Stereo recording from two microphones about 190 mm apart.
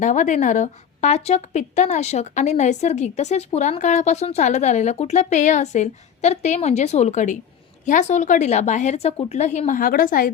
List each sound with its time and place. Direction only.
0.0 s a woman's voice: 40° left (ahead or behind)